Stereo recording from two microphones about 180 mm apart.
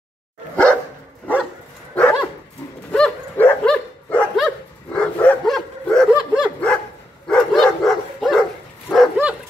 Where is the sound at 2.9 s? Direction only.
10° left (ahead or behind).